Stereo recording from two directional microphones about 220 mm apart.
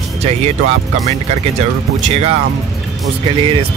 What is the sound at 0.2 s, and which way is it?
Speech, 30° right (ahead or behind).